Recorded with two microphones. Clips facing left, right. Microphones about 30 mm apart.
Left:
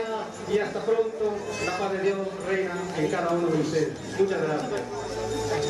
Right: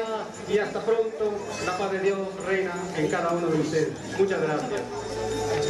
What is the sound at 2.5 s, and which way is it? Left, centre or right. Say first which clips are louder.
Speech: right 1 dB; centre.